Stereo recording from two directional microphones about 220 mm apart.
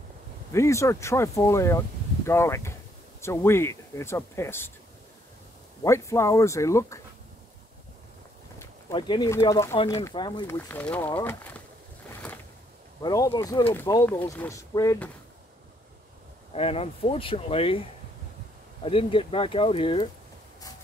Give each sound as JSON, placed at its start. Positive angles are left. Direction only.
{"t": 0.5, "sound": "speech", "side_deg": 15}
{"t": 5.9, "sound": "speech", "side_deg": 15}
{"t": 8.5, "sound": "speech", "side_deg": 15}
{"t": 10.7, "sound": "speech", "side_deg": 5}
{"t": 13.0, "sound": "speech", "side_deg": 15}
{"t": 16.5, "sound": "speech", "side_deg": 25}